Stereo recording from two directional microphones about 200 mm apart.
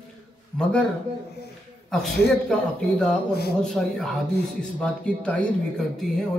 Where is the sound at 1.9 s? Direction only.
Centre (ahead or behind).